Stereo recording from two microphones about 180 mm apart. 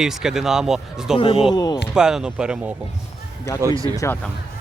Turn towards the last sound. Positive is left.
turn(degrees=-20)  # may be behind; listen again after turning